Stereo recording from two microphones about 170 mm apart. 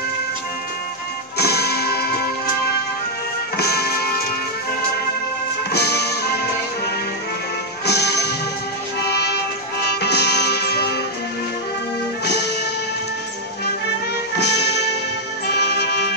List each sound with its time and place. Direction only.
1.4 s music: 70° left (ahead or behind)
3.5 s music: 70° left (ahead or behind)
5.7 s music: 70° left (ahead or behind)
7.8 s music: 75° left (ahead or behind)
14.4 s music: 80° left